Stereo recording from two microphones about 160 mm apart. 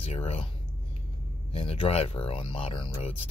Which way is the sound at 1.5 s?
35° left (ahead or behind).